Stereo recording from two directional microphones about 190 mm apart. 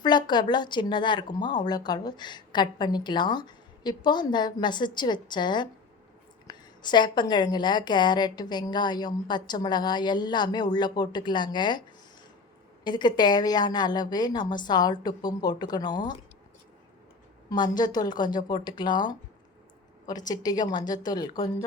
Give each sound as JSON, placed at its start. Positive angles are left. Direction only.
{"t": 0.0, "sound": "speech", "side_deg": 25}
{"t": 12.8, "sound": "speech", "side_deg": 25}
{"t": 17.5, "sound": "speech", "side_deg": 20}